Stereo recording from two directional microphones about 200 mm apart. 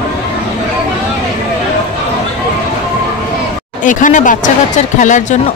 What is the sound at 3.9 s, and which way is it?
Speech, 40° left (ahead or behind).